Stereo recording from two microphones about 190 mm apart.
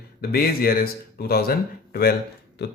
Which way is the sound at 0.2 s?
55° left (ahead or behind).